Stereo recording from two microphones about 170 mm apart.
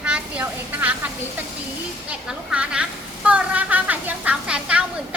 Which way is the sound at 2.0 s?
5° right (ahead or behind).